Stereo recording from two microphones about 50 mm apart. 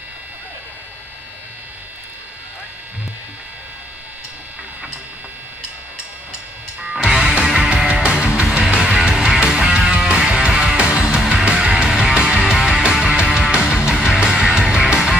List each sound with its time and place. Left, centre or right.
7.0 s music: centre
7.9 s music: right